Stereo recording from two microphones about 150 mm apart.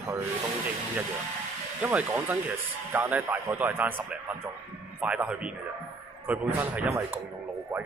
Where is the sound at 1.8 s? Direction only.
10° right (ahead or behind).